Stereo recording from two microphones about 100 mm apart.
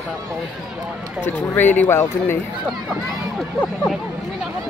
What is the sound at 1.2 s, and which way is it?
Speech, 20° left (ahead or behind).